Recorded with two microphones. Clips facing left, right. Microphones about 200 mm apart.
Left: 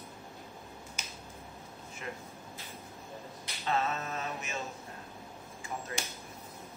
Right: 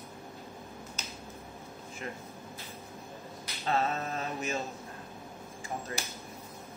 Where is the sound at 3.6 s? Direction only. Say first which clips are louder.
Right 2 dB; 35° right (ahead or behind).